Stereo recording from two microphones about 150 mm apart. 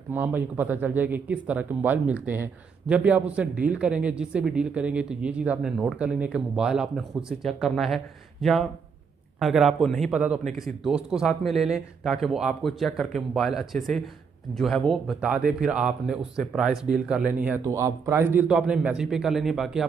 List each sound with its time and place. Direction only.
0.1 s speech: 15° right (ahead or behind)
17.6 s speech: 20° right (ahead or behind); by 19.8 s centre (ahead or behind)